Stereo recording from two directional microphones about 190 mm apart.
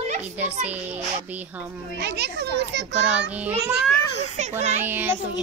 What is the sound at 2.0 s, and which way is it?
Speech, 60° right (ahead or behind).